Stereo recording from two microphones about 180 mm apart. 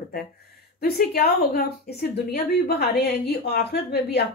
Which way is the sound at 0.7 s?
60° left (ahead or behind).